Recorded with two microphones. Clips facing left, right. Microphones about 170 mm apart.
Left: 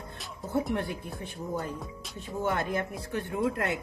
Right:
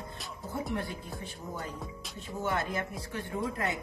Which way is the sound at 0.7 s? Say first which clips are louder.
Left 3 dB; 65° left (ahead or behind).